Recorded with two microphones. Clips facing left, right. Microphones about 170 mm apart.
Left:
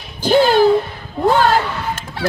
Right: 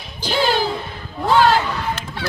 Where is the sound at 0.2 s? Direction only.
50° left (ahead or behind).